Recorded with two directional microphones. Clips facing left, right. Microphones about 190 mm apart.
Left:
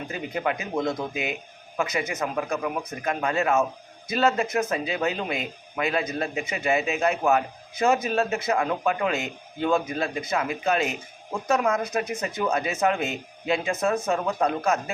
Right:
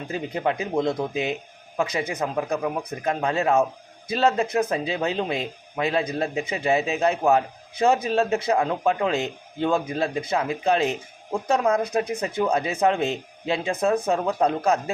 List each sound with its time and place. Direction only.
0.1 s speech: 30° right (ahead or behind)